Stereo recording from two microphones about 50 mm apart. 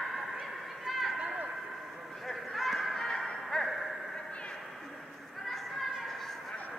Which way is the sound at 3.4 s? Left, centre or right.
Centre.